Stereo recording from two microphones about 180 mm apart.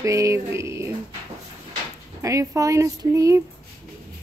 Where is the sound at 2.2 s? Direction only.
15° right (ahead or behind).